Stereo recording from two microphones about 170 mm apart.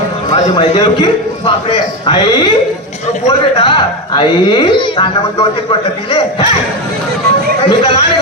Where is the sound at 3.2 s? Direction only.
30° left (ahead or behind).